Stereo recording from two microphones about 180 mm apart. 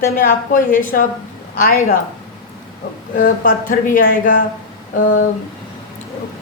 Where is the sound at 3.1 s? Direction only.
50° left (ahead or behind).